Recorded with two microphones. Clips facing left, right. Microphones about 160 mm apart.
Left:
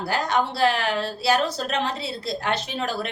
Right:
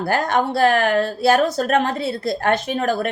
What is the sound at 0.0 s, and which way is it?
Speech, 50° right (ahead or behind).